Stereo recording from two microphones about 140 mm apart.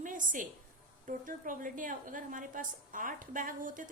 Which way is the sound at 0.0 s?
70° right (ahead or behind).